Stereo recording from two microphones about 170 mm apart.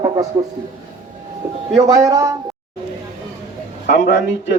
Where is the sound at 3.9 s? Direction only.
85° left.